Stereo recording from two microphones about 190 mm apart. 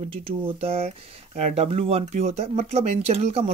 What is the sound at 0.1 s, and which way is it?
Speech, 30° right (ahead or behind).